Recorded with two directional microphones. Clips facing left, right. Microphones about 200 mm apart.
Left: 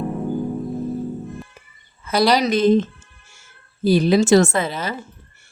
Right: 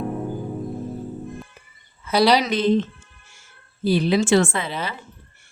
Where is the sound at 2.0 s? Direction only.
45° left (ahead or behind).